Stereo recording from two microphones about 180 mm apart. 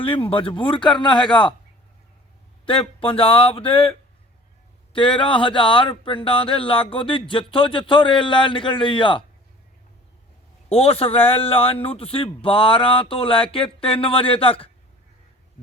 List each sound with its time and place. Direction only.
0.0 s speech: 30° left (ahead or behind)
2.6 s a man's voice: 30° left (ahead or behind)
4.9 s speech: 30° left (ahead or behind)
10.7 s a man's voice: 35° left (ahead or behind)